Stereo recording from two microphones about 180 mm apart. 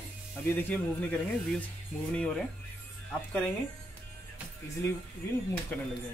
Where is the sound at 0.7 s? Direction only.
10° left (ahead or behind).